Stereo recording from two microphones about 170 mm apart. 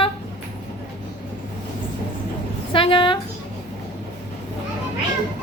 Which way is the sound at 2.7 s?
30° left (ahead or behind).